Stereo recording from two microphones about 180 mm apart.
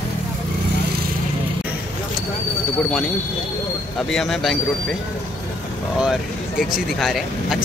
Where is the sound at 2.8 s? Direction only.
Centre (ahead or behind).